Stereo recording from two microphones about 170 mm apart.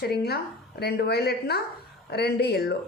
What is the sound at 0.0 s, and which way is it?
Speech, 70° left (ahead or behind).